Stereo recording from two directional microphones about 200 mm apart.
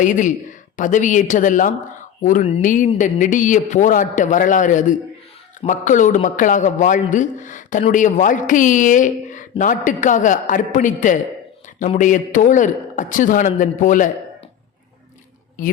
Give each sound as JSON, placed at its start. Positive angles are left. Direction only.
{"t": 0.0, "sound": "a man's voice", "side_deg": 40}